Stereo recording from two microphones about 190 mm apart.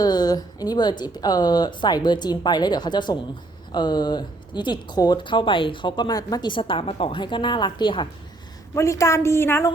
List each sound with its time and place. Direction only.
0.0 s a woman's voice: 20° left (ahead or behind)